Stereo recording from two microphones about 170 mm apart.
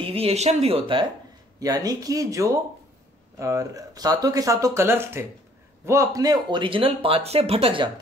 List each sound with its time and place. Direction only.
0.0 s speech: 35° right (ahead or behind)
1.6 s speech: 20° right (ahead or behind)